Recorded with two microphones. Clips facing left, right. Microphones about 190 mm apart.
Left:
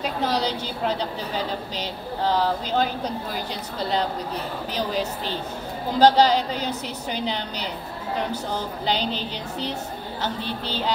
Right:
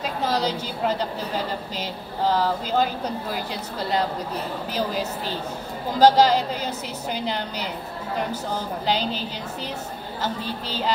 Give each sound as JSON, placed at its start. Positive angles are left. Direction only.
{"t": 0.0, "sound": "a woman's voice", "side_deg": -5}
{"t": 4.7, "sound": "a woman's voice", "side_deg": -5}
{"t": 8.8, "sound": "a woman's voice", "side_deg": -5}